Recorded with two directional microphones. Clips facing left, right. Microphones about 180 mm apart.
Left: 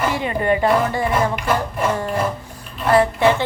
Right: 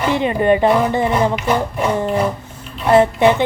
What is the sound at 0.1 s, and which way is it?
Speech, 20° right (ahead or behind).